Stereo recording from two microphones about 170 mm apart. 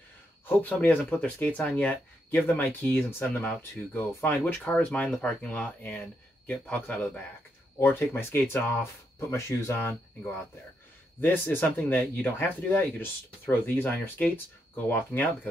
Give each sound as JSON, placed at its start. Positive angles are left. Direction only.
{"t": 0.5, "sound": "speech", "side_deg": 10}
{"t": 11.1, "sound": "speech", "side_deg": 10}